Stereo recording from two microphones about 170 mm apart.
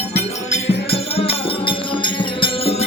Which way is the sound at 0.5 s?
35° left (ahead or behind).